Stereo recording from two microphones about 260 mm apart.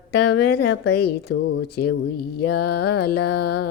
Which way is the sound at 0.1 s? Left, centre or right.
Left.